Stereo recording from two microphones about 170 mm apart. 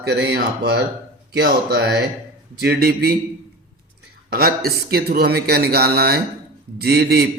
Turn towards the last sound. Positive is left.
turn(degrees=-70)  # may be behind; listen again after turning